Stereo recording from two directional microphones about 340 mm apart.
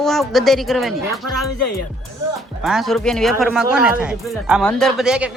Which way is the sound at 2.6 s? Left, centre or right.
Centre.